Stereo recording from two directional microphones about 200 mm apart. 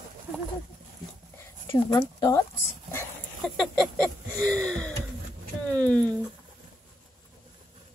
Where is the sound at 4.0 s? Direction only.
5° left (ahead or behind).